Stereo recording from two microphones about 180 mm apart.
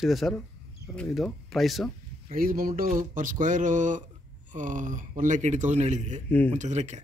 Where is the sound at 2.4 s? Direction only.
55° right (ahead or behind).